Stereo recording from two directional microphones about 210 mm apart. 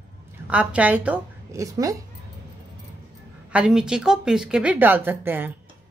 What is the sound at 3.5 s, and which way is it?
Speech, 5° right (ahead or behind).